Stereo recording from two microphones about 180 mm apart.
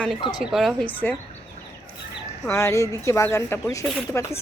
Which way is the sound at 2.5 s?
15° left (ahead or behind).